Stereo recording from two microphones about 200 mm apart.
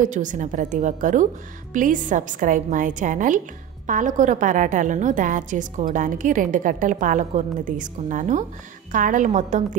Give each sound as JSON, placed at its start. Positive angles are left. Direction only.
{"t": 0.0, "sound": "a woman's voice", "side_deg": -40}